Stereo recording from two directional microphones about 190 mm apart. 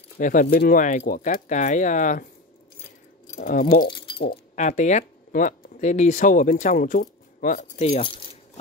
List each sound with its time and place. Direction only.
0.2 s speech: 45° left (ahead or behind)
3.3 s speech: 45° left (ahead or behind)
3.8 s speech: 25° left (ahead or behind)
4.3 s speech: 40° left (ahead or behind)